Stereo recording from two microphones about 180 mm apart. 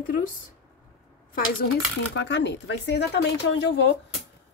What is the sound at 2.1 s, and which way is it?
A woman's voice, 75° left (ahead or behind).